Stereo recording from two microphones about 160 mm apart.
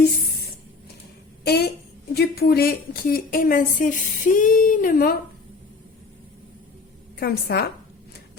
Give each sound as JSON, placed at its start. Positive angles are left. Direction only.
{"t": 1.5, "sound": "a woman's voice", "side_deg": 90}
{"t": 7.2, "sound": "a woman's voice", "side_deg": 75}